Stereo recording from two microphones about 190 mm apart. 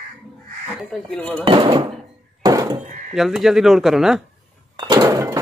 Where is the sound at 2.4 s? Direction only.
20° right (ahead or behind).